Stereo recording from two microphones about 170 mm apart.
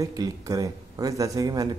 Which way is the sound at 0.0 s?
20° right (ahead or behind).